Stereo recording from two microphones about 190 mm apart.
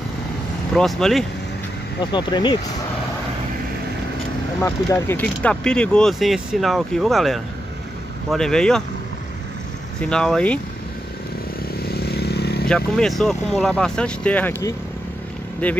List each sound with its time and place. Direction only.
0.7 s speech: 5° left (ahead or behind)
2.1 s speech: 25° left (ahead or behind)
4.6 s speech: 15° left (ahead or behind)
10.0 s speech: 5° left (ahead or behind)
11.9 s vehicle: 55° left (ahead or behind)
12.6 s speech: 5° left (ahead or behind)